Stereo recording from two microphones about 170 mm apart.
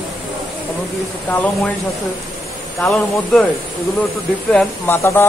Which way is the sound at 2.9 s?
5° left (ahead or behind).